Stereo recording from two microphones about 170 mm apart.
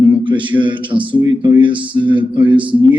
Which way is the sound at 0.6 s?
30° right (ahead or behind).